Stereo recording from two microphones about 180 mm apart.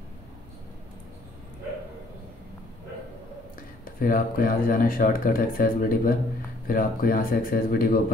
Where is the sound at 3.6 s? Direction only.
50° left (ahead or behind).